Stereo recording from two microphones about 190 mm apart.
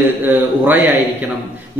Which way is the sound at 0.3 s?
10° right (ahead or behind).